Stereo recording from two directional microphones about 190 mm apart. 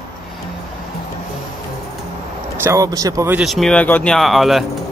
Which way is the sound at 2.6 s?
15° right (ahead or behind).